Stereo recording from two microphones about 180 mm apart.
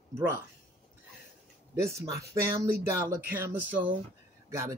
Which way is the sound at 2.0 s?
20° right (ahead or behind).